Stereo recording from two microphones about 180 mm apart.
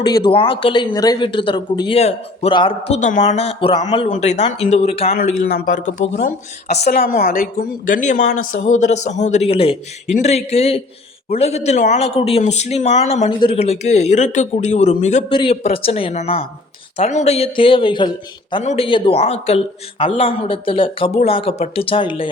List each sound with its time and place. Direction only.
0.0 s speech: 25° left (ahead or behind)
2.0 s speech: 35° left (ahead or behind)
5.1 s speech: 50° left (ahead or behind)
15.3 s speech: 30° left (ahead or behind)